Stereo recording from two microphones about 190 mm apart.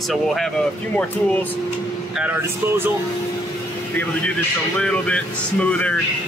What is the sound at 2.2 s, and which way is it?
Speech, 10° right (ahead or behind).